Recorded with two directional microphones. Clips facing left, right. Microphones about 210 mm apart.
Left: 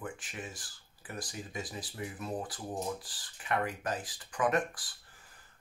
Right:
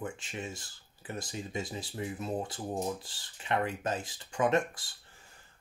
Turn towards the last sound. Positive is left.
turn(degrees=-25)  # may be behind; listen again after turning